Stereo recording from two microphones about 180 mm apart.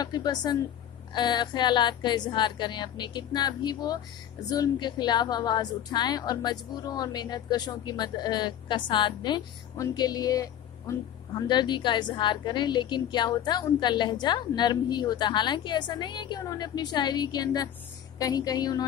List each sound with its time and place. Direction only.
0.0 s a woman's voice: 25° left (ahead or behind)